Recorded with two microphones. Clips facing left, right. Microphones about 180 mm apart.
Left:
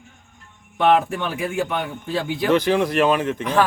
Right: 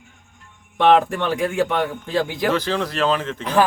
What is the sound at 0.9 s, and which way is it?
Speech, 5° left (ahead or behind).